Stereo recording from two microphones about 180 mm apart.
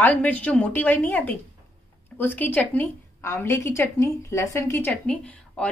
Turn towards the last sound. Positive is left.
turn(degrees=5)  # may be behind; listen again after turning